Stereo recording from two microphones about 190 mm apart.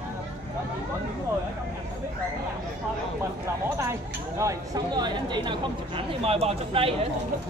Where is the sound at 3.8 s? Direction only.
15° right (ahead or behind); by 6.9 s 30° right (ahead or behind).